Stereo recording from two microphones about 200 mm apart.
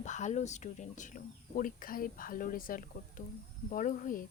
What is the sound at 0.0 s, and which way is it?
Speech, 35° left (ahead or behind).